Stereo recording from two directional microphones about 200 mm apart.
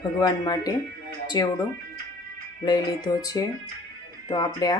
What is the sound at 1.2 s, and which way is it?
Music, 20° left (ahead or behind).